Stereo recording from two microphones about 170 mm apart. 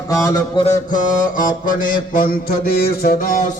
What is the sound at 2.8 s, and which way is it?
Music, 60° left (ahead or behind).